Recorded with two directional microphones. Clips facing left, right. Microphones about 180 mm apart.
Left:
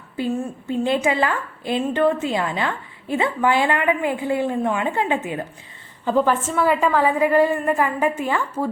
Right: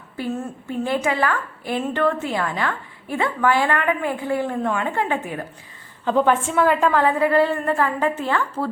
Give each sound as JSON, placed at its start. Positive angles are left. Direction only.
{"t": 0.7, "sound": "a woman's voice", "side_deg": 20}
{"t": 6.1, "sound": "a woman's voice", "side_deg": 0}